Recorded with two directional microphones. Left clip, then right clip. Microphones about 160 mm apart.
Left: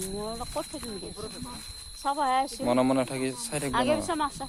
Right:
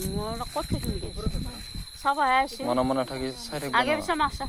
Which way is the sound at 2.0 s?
20° right (ahead or behind).